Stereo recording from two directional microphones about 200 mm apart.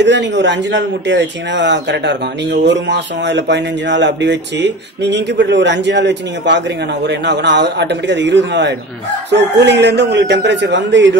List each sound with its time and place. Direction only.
0.0 s speech: 60° right (ahead or behind)